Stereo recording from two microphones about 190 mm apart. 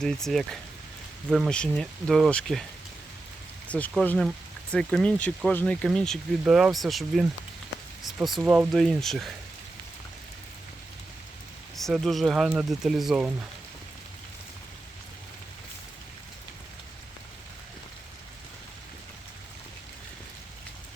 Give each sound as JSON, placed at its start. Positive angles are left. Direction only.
{"t": 0.0, "sound": "speech", "side_deg": 0}
{"t": 3.7, "sound": "speech", "side_deg": 10}
{"t": 11.8, "sound": "speech", "side_deg": 0}